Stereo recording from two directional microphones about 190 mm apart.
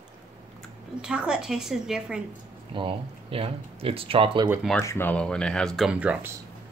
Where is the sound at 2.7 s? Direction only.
30° right (ahead or behind).